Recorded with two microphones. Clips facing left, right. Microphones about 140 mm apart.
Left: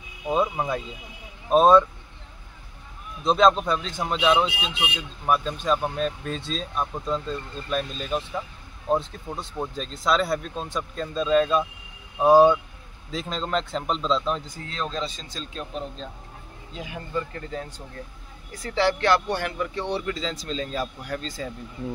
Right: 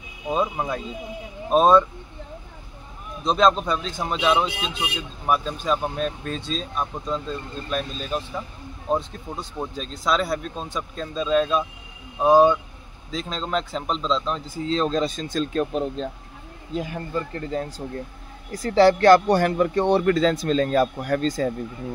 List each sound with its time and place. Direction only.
0.3 s speech: 5° left (ahead or behind)
3.3 s speech: centre (ahead or behind)
14.7 s speech: 35° right (ahead or behind)
15.0 s speech: 50° right (ahead or behind)
17.5 s speech: 35° right (ahead or behind)